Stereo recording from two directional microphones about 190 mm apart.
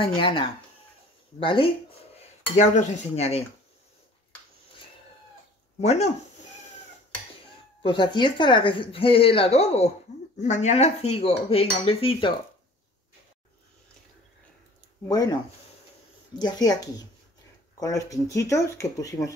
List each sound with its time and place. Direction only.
0.0 s speech: 25° left (ahead or behind)
5.8 s cutlery: 35° left (ahead or behind)
7.8 s speech: 25° left (ahead or behind)
10.4 s cutlery: 40° left (ahead or behind)
16.3 s speech: 20° left (ahead or behind)